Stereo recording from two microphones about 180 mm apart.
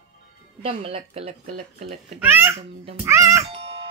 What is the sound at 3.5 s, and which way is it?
Music, 30° right (ahead or behind).